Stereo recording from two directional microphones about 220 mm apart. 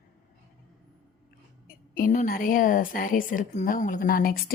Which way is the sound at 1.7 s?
40° left (ahead or behind).